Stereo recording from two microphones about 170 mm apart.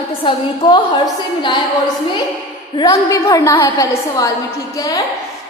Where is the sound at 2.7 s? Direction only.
20° left (ahead or behind).